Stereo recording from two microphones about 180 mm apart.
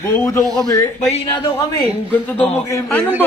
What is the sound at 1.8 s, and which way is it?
Speech, 10° left (ahead or behind).